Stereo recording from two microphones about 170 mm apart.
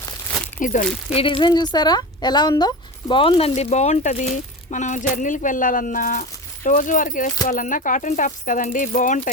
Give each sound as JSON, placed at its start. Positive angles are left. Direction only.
{"t": 0.6, "sound": "speech", "side_deg": 50}
{"t": 1.1, "sound": "speech", "side_deg": 30}